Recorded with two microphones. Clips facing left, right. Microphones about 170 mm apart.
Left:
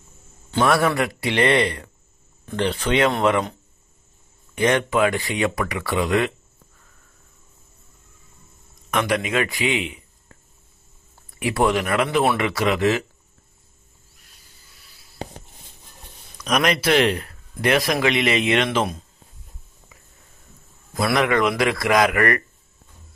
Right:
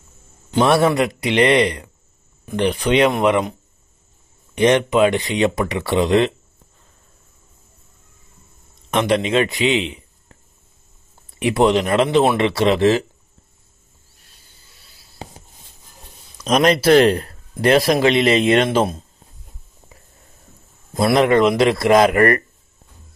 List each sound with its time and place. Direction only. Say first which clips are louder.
0.5 s speech: right 4 dB; 20° right (ahead or behind)
4.6 s speech: right 5 dB; 20° right (ahead or behind)
8.9 s a man's voice: right 5 dB; 25° right (ahead or behind)
11.3 s speech: right 5 dB; 20° right (ahead or behind)
14.2 s a sound: right 1 dB; 30° right (ahead or behind)
16.3 s speech: right 5 dB; 25° right (ahead or behind)
20.9 s speech: right 5 dB; 25° right (ahead or behind)